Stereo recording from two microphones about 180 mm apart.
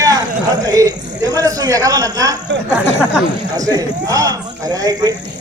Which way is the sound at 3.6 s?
20° right (ahead or behind).